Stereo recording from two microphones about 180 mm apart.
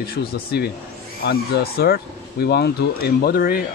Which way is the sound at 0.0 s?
55° left (ahead or behind).